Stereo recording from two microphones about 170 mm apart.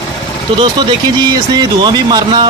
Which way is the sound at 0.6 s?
25° right (ahead or behind).